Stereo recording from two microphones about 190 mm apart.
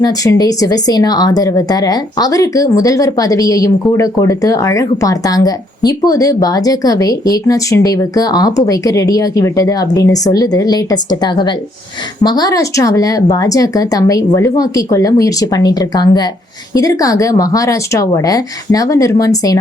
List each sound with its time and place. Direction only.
0.0 s speech: 20° left (ahead or behind)